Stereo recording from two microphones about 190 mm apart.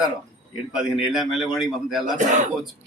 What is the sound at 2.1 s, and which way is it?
Speech, 40° right (ahead or behind).